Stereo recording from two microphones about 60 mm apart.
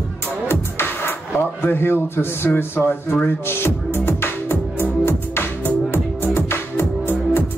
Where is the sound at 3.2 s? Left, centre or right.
Left.